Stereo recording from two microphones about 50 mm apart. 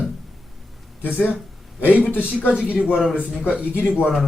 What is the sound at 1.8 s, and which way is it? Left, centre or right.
Speech, left.